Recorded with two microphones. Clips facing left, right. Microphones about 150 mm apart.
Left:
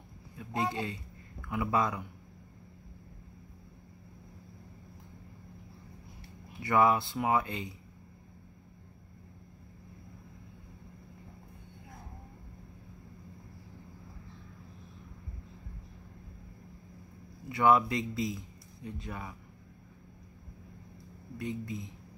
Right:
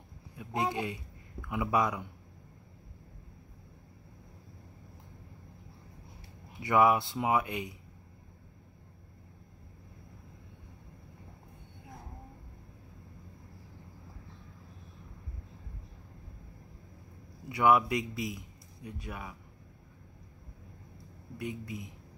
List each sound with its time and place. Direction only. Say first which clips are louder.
0.4 s speech: right 1 dB; 15° right (ahead or behind)
6.6 s speech: right 1 dB; 15° right (ahead or behind)
17.5 s speech: even; 10° right (ahead or behind)
18.3 s a sound: left 3 dB; 15° right (ahead or behind)
19.0 s speech: right 1 dB; 10° right (ahead or behind)
21.4 s speech: left 2 dB; 15° right (ahead or behind)